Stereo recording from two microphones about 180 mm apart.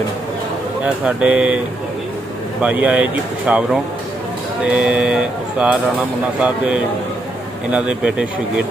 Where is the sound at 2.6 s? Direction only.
10° right (ahead or behind).